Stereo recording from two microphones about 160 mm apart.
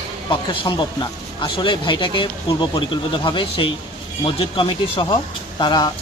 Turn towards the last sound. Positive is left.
turn(degrees=25)  # may be behind; listen again after turning